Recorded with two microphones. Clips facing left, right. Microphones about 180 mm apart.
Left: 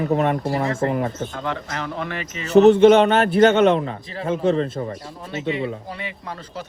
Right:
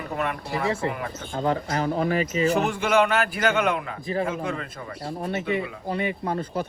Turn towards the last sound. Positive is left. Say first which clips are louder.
# right 6 dB
turn(degrees=-50)  # may be behind; listen again after turning